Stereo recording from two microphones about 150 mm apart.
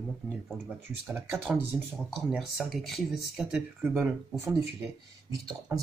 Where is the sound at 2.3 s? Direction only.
Centre (ahead or behind).